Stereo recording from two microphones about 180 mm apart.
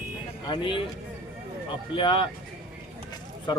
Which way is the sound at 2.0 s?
30° left (ahead or behind).